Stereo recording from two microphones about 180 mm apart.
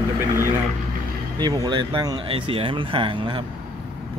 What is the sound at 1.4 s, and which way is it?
Speech, 25° right (ahead or behind).